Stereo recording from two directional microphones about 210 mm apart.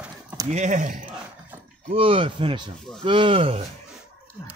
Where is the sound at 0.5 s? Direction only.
35° right (ahead or behind).